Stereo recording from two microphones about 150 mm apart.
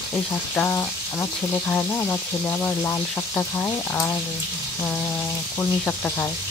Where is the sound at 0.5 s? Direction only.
15° left (ahead or behind).